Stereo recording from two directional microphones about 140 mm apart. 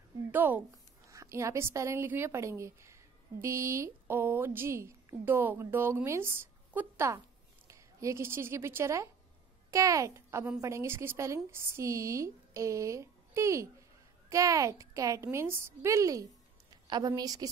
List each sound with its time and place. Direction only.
0.3 s a woman's voice: 15° right (ahead or behind)